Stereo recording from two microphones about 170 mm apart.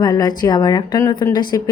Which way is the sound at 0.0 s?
25° left (ahead or behind).